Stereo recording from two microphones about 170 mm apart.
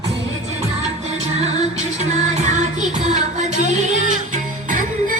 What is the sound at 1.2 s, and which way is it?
Music, 40° right (ahead or behind).